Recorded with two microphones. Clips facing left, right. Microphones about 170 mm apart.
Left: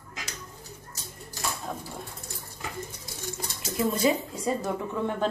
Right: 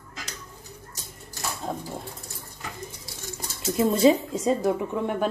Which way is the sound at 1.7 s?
30° right (ahead or behind).